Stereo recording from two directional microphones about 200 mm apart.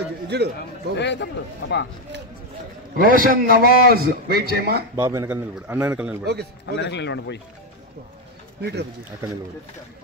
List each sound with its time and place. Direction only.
0.3 s a man's voice: 55° right (ahead or behind)
0.9 s a man's voice: 60° left (ahead or behind)
3.1 s a man's voice: 45° right (ahead or behind)
4.9 s a man's voice: 15° right (ahead or behind)
6.6 s a man's voice: 60° left (ahead or behind)
8.5 s speech: 55° right (ahead or behind)